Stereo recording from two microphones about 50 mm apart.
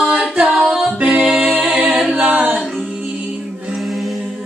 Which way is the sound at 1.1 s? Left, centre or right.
Centre.